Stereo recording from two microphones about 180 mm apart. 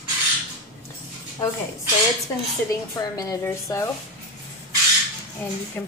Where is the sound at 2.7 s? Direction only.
20° left (ahead or behind).